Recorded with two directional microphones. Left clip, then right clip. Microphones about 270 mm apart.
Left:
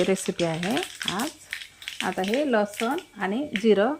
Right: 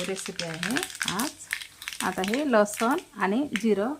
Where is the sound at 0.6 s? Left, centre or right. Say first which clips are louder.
Left 1 dB; centre.